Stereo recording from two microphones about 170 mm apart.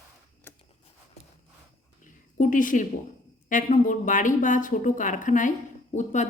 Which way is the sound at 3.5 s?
50° left (ahead or behind).